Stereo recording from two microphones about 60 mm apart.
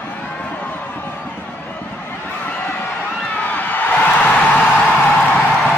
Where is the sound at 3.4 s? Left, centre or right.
Left.